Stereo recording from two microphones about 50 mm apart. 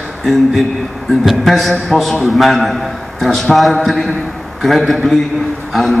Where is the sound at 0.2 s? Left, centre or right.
Centre.